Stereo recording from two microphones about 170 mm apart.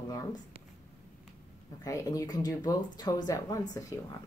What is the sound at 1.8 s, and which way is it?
Speech, 20° left (ahead or behind).